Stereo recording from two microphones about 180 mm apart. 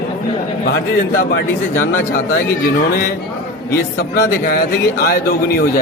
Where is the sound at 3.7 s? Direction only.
60° left (ahead or behind).